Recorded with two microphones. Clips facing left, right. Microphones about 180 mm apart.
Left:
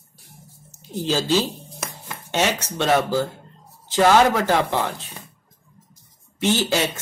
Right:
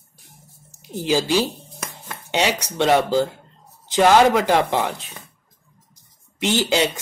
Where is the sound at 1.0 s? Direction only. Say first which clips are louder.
Right 2 dB; 15° right (ahead or behind).